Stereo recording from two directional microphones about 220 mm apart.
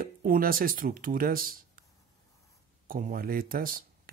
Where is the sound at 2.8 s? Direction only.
40° right (ahead or behind).